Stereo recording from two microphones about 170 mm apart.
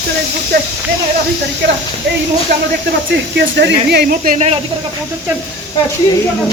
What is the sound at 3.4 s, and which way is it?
Speech, 90° right.